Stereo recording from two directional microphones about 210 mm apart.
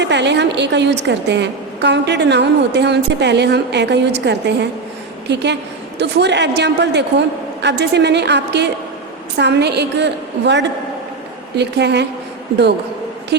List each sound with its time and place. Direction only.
0.0 s a woman's voice: 55° right (ahead or behind)